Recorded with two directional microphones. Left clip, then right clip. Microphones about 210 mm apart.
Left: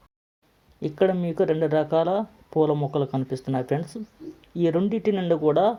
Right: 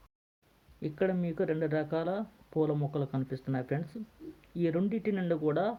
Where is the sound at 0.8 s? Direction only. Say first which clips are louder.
Left 9 dB; 20° left (ahead or behind).